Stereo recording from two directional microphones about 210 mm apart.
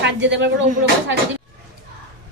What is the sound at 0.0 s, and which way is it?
Speech, 60° right (ahead or behind).